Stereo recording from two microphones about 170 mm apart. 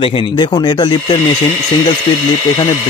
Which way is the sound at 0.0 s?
30° left (ahead or behind).